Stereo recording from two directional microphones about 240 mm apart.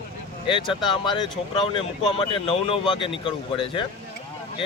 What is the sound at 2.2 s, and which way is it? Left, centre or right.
Speech, left.